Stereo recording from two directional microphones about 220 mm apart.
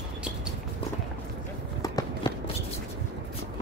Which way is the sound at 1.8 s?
15° left (ahead or behind).